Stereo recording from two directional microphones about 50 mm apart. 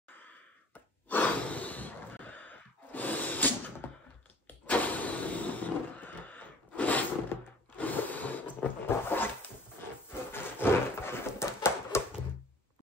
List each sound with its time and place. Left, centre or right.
0.7 s gasp: left
4.6 s vehicle: left
10.3 s a sound: left